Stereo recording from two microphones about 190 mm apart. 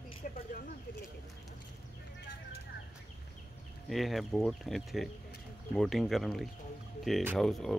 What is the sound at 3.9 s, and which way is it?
Speech, centre (ahead or behind).